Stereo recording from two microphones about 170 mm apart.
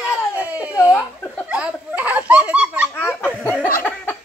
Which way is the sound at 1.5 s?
10° right (ahead or behind).